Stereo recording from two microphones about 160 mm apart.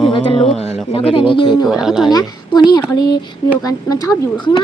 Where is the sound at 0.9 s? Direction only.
35° left (ahead or behind).